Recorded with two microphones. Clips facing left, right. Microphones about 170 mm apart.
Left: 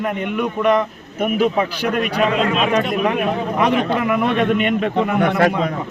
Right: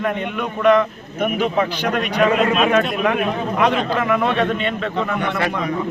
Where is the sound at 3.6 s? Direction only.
10° left (ahead or behind).